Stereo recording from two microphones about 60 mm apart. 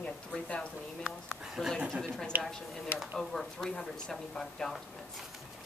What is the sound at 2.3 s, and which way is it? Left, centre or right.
Speech, right.